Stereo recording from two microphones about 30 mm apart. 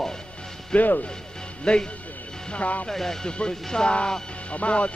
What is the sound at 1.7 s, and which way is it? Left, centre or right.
Speech, left.